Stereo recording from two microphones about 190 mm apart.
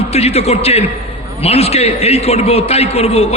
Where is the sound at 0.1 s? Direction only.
35° left (ahead or behind).